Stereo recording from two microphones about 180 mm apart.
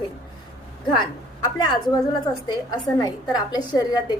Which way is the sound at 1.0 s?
25° left (ahead or behind).